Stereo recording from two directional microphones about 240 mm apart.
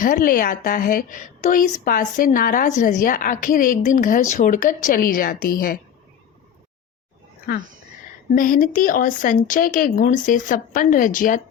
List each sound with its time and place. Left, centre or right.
0.0 s a woman's voice: left
8.4 s a woman's voice: left